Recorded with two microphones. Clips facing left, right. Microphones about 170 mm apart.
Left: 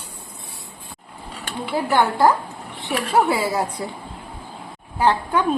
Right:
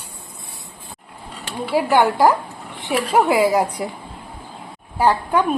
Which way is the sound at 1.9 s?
15° right (ahead or behind).